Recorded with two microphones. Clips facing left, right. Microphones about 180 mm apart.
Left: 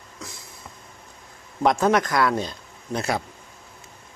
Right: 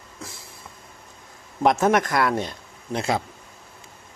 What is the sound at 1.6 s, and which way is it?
Speech, 20° right (ahead or behind).